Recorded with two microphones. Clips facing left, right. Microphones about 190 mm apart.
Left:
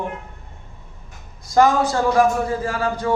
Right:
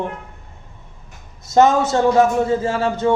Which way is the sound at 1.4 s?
25° right (ahead or behind).